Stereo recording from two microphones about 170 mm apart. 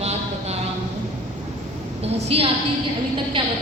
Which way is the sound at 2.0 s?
35° right (ahead or behind).